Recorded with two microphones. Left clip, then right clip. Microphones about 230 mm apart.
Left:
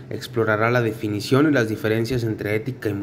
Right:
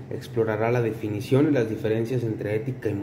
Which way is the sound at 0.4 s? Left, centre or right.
Centre.